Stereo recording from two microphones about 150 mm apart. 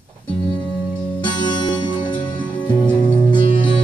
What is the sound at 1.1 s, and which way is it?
Music, 30° left (ahead or behind).